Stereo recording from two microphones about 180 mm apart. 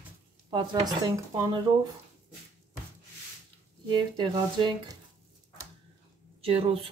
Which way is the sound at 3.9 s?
25° right (ahead or behind).